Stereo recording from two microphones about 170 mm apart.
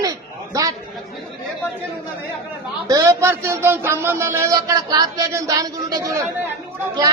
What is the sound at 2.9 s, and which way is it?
A woman's voice, 20° right (ahead or behind).